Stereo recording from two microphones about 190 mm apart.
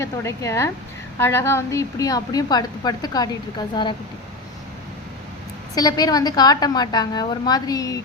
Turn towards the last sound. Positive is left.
turn(degrees=20)  # may be behind; listen again after turning